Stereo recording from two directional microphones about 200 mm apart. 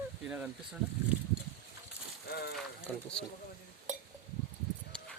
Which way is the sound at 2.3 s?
50° left (ahead or behind).